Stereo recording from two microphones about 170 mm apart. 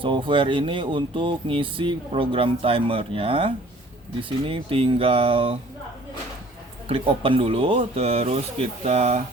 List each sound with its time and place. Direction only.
0.0 s speech: 30° right (ahead or behind)
6.8 s speech: 35° right (ahead or behind)